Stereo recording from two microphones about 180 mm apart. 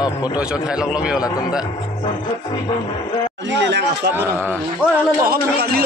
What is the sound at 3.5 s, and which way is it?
Speech, 85° right.